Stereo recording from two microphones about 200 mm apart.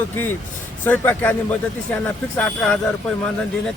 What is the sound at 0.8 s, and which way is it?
Speech, 10° left (ahead or behind).